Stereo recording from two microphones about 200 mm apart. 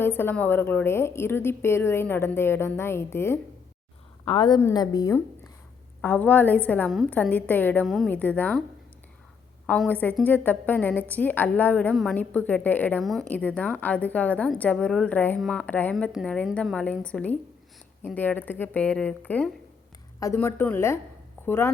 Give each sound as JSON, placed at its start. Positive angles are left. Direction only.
{"t": 0.0, "sound": "a woman's voice", "side_deg": 10}
{"t": 4.3, "sound": "a woman's voice", "side_deg": 25}
{"t": 9.6, "sound": "a woman's voice", "side_deg": 5}